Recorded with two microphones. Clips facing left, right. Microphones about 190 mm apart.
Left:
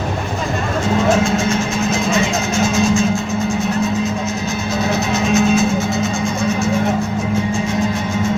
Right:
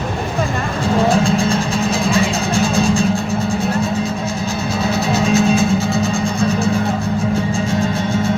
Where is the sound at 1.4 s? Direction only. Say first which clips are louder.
Even; 35° right (ahead or behind).